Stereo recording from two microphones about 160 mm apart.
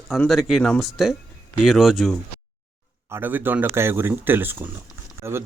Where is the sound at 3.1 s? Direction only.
10° right (ahead or behind).